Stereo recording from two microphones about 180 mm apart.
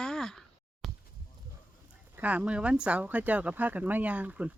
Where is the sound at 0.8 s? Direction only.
Centre (ahead or behind).